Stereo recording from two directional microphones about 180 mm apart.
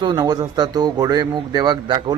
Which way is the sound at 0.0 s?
25° right (ahead or behind).